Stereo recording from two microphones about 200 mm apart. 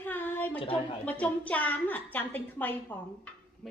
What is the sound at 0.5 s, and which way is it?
Speech, 25° left (ahead or behind).